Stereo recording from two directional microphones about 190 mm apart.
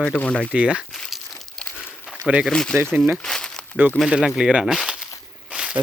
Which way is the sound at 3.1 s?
5° left (ahead or behind).